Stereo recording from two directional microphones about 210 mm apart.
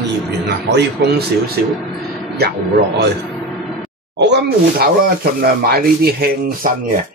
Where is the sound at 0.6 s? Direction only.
55° right (ahead or behind).